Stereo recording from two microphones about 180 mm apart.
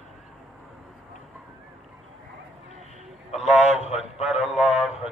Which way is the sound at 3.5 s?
40° left (ahead or behind).